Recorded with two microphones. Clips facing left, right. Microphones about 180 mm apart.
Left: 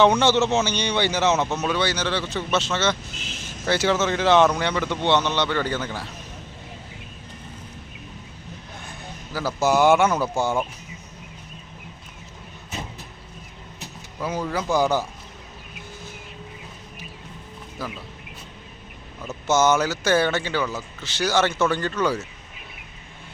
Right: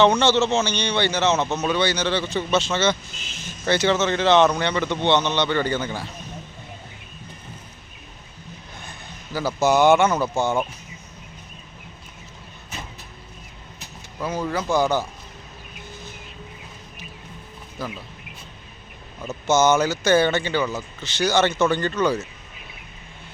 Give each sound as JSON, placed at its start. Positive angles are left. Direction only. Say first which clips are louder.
{"t": 0.0, "sound": "a man's voice", "louder": "even", "side_deg": 15}
{"t": 8.9, "sound": "speech", "louder": "right 2 dB", "side_deg": 0}
{"t": 14.2, "sound": "a man's voice", "louder": "right 1 dB", "side_deg": 10}
{"t": 17.8, "sound": "speech", "louder": "right 1 dB", "side_deg": 5}
{"t": 19.5, "sound": "speech", "louder": "right 1 dB", "side_deg": 5}